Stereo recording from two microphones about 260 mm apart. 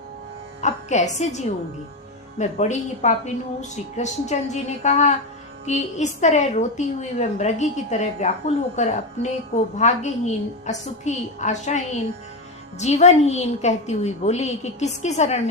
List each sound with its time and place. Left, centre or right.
0.6 s a woman's voice: left